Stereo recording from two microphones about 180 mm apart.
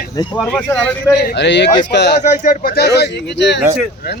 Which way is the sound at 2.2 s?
45° left (ahead or behind).